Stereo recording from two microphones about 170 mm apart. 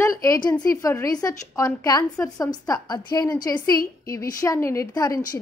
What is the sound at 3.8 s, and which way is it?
Speech, 60° left (ahead or behind).